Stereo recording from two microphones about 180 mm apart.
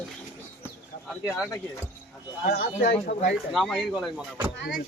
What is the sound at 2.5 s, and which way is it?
Speech, 55° left (ahead or behind).